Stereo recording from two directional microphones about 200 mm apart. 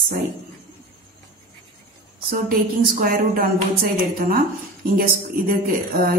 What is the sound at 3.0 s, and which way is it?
A woman's voice, 45° right (ahead or behind).